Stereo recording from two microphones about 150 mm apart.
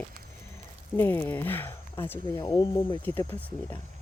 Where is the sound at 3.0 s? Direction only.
15° left (ahead or behind).